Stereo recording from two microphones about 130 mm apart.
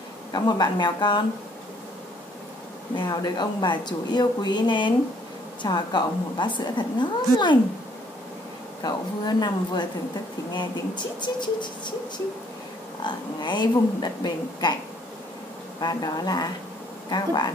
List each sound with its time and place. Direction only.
0.3 s a woman's voice: 30° left (ahead or behind)
3.0 s a woman's voice: 35° left (ahead or behind)
8.8 s a woman's voice: 35° left (ahead or behind)
13.0 s a woman's voice: 35° left (ahead or behind)
15.8 s a woman's voice: 30° left (ahead or behind)